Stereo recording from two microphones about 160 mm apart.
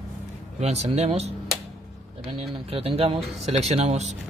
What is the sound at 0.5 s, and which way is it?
Speech, 45° right (ahead or behind).